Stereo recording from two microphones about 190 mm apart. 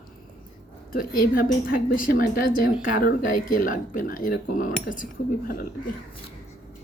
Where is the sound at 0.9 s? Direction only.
50° left (ahead or behind).